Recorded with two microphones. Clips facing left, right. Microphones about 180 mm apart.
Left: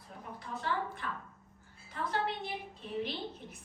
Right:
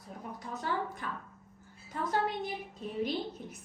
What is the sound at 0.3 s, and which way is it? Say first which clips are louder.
A woman's voice: right 1 dB; 40° right (ahead or behind).